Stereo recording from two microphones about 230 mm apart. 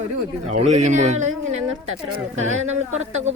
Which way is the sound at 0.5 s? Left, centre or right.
Right.